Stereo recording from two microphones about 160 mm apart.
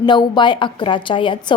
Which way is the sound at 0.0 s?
30° left (ahead or behind).